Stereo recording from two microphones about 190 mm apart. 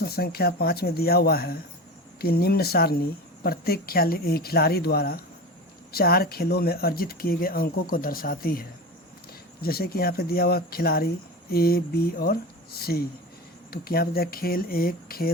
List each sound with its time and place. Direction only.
0.0 s speech: 55° left (ahead or behind)